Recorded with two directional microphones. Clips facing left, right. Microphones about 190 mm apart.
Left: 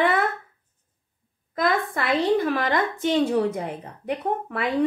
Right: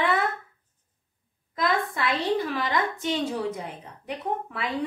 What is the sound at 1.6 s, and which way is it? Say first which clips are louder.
A woman's voice: left 2 dB; 55° left (ahead or behind).